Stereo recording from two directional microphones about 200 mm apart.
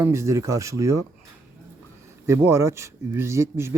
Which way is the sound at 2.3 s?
15° right (ahead or behind).